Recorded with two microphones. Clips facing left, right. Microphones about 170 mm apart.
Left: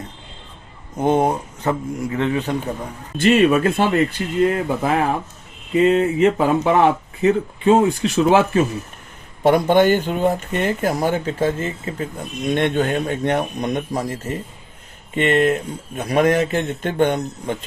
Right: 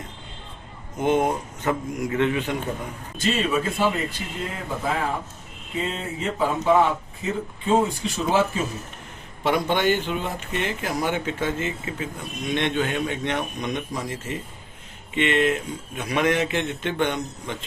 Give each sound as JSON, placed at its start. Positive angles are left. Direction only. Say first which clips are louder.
{"t": 0.9, "sound": "speech", "louder": "left 4 dB", "side_deg": 35}
{"t": 3.2, "sound": "speech", "louder": "left 9 dB", "side_deg": 70}
{"t": 9.4, "sound": "speech", "louder": "left 8 dB", "side_deg": 45}
{"t": 12.5, "sound": "speech", "louder": "left 6 dB", "side_deg": 50}